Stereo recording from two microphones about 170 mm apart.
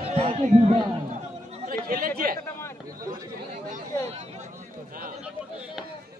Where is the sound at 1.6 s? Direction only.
60° right (ahead or behind).